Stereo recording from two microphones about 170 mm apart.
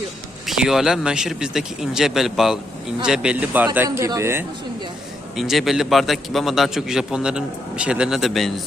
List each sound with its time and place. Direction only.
0.4 s a man's voice: centre (ahead or behind)
3.8 s a man's voice: 20° right (ahead or behind)
5.4 s a man's voice: centre (ahead or behind)